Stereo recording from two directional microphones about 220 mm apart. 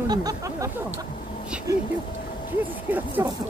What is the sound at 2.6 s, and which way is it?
Speech, 10° right (ahead or behind).